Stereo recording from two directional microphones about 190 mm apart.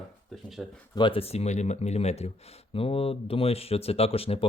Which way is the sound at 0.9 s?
25° left (ahead or behind).